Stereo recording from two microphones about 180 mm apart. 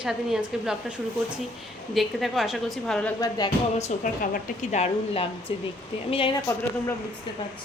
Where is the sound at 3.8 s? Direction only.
45° left (ahead or behind).